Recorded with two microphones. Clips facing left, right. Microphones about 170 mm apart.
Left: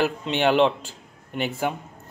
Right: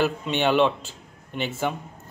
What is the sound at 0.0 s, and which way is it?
A man's voice, 15° left (ahead or behind).